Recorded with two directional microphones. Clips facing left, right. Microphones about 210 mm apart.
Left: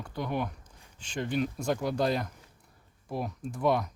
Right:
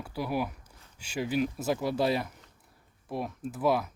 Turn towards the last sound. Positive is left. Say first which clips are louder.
# even
turn(degrees=-5)  # may be behind; listen again after turning